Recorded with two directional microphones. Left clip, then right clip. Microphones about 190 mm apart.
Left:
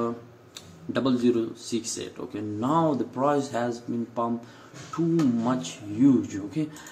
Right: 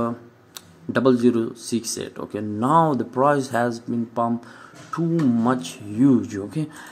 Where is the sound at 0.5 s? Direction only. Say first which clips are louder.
Right 5 dB; 50° right (ahead or behind).